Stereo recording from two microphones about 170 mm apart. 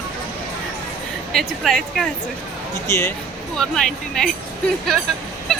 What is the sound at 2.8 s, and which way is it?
Speech, 15° left (ahead or behind).